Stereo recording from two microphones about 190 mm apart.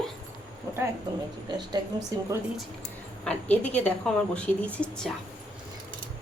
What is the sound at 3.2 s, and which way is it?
A woman's voice, 10° left (ahead or behind).